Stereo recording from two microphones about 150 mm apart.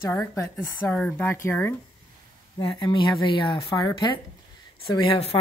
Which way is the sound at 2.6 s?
30° left (ahead or behind).